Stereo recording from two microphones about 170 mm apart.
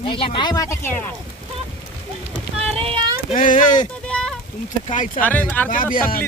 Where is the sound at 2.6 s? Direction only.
35° right (ahead or behind).